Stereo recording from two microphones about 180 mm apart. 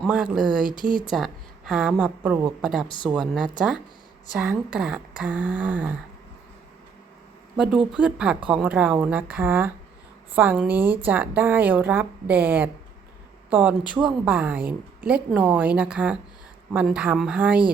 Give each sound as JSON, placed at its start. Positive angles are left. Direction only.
{"t": 0.0, "sound": "speech", "side_deg": -5}
{"t": 0.8, "sound": "speech", "side_deg": 25}
{"t": 1.1, "sound": "a woman's voice", "side_deg": 0}
{"t": 2.8, "sound": "speech", "side_deg": 30}
{"t": 3.1, "sound": "a woman's voice", "side_deg": -5}
{"t": 7.5, "sound": "a woman's voice", "side_deg": -5}